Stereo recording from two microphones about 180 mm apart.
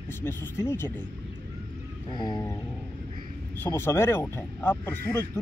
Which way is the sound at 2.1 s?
25° left (ahead or behind).